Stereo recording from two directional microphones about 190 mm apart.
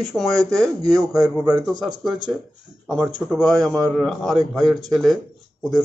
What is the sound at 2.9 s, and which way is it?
Speech, 5° right (ahead or behind).